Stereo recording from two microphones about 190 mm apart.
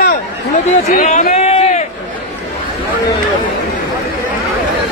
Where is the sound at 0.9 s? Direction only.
40° left (ahead or behind).